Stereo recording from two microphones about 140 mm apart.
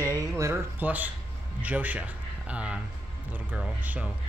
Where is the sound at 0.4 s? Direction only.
15° right (ahead or behind).